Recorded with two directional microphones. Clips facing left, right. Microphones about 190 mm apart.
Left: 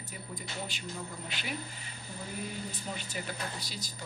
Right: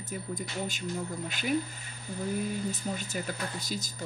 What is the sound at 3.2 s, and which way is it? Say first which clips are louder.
Speech: right 4 dB; 45° right (ahead or behind).